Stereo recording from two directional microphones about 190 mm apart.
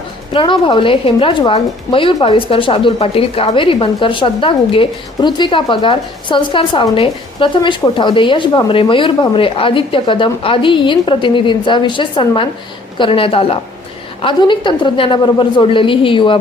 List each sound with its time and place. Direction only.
0.3 s a woman's voice: 25° left (ahead or behind)